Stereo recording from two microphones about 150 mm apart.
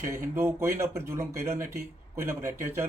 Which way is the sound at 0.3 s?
15° right (ahead or behind).